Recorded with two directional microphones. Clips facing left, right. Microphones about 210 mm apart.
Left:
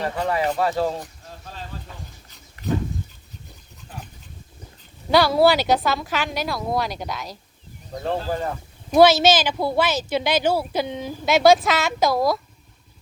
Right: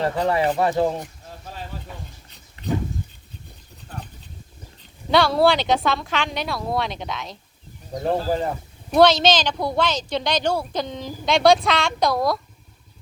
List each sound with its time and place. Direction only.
0.0 s speech: 25° right (ahead or behind)
5.1 s speech: centre (ahead or behind)
8.9 s speech: 5° left (ahead or behind)